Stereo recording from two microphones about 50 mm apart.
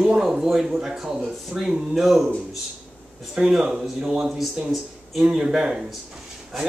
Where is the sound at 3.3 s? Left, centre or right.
Centre.